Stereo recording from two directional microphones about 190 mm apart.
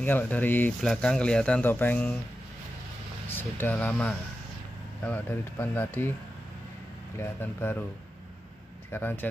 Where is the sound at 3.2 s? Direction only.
10° left (ahead or behind).